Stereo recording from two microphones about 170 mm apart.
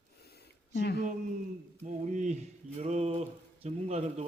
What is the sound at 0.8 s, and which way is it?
Speech, 75° left (ahead or behind).